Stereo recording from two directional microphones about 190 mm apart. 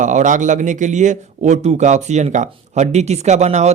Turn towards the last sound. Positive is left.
turn(degrees=-35)  # may be behind; listen again after turning